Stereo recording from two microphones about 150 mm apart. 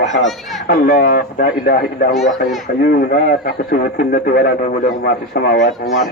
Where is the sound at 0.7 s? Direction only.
70° left (ahead or behind).